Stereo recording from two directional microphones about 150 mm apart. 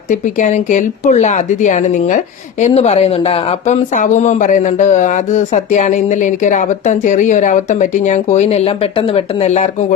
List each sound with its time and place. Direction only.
0.1 s speech: 55° left (ahead or behind)